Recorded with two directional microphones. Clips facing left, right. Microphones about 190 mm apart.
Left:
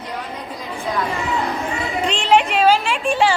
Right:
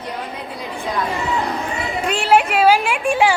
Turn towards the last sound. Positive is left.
turn(degrees=-10)  # may be behind; listen again after turning